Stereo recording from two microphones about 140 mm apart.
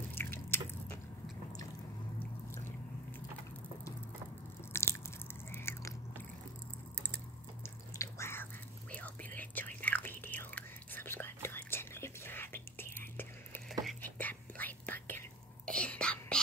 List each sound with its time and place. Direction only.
0.1 s drip: 15° left (ahead or behind)
2.1 s a sound: 15° left (ahead or behind)
4.7 s biting: 20° left (ahead or behind)
8.0 s biting: 20° left (ahead or behind)
8.9 s whispering: 10° left (ahead or behind)